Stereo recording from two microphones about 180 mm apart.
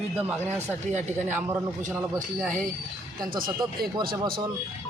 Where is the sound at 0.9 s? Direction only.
40° right (ahead or behind).